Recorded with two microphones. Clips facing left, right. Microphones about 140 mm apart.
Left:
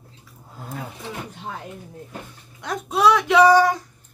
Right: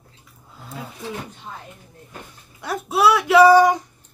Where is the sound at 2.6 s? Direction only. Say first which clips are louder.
Right 1 dB; 5° right (ahead or behind).